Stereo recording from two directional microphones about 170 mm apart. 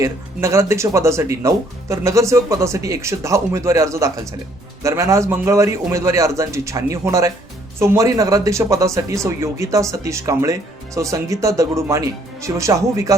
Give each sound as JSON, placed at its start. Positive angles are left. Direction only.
{"t": 0.0, "sound": "speech", "side_deg": -15}